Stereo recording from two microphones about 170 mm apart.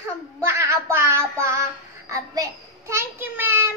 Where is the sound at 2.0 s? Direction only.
20° right (ahead or behind).